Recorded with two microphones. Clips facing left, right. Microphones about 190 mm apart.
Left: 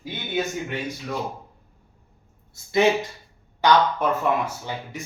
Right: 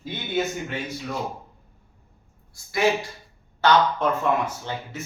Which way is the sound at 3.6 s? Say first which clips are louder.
Even; 10° left (ahead or behind).